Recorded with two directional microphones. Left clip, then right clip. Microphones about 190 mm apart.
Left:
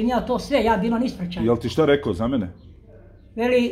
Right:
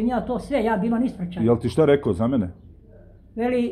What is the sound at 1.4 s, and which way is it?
Speech, 20° right (ahead or behind).